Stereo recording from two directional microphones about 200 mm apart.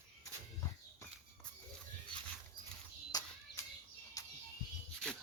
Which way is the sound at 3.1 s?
20° left (ahead or behind).